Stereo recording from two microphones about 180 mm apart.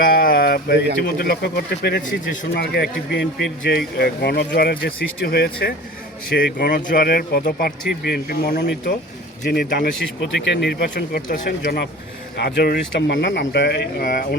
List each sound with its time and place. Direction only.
0.0 s speech: 55° left (ahead or behind)
2.0 s speech: 45° left (ahead or behind)
2.6 s speech: 65° left (ahead or behind)
11.3 s speech: 45° left (ahead or behind)
11.6 s speech: 65° left (ahead or behind)